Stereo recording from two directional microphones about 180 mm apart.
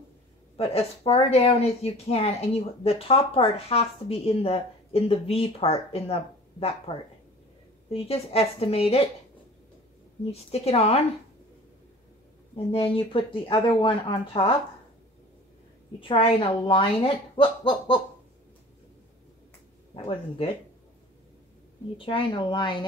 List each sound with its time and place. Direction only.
0.6 s speech: 35° left (ahead or behind)
10.3 s speech: 35° left (ahead or behind)
12.5 s speech: 30° left (ahead or behind)
16.0 s speech: 30° left (ahead or behind)
21.9 s speech: 30° left (ahead or behind)